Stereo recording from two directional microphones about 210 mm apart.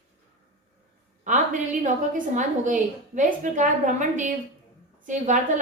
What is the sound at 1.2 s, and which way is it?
A woman's voice, 35° right (ahead or behind).